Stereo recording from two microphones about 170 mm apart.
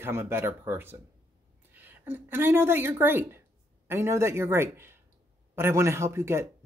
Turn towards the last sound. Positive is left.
turn(degrees=-15)  # may be behind; listen again after turning